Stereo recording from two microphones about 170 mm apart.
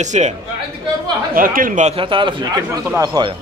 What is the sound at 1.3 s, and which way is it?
Speech, 55° right (ahead or behind).